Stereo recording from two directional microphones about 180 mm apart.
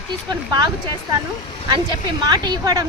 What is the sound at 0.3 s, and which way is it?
Speech, 25° right (ahead or behind).